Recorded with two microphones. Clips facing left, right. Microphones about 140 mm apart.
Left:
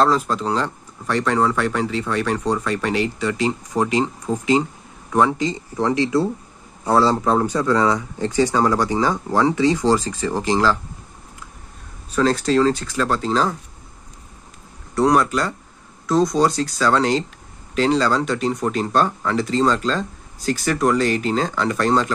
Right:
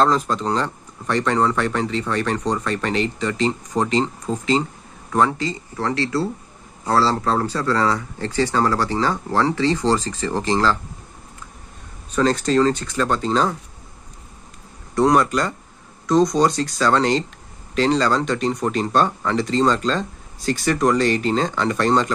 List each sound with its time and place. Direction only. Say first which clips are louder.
0.0 s speech: even; 5° left (ahead or behind)
12.2 s speech: even; centre (ahead or behind)
15.0 s speech: even; centre (ahead or behind)